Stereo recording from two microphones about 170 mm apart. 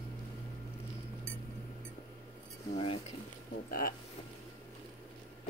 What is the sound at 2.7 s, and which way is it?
Speech, 35° left (ahead or behind).